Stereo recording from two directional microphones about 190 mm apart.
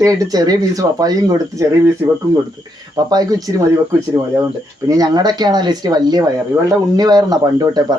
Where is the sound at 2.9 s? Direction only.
20° right (ahead or behind).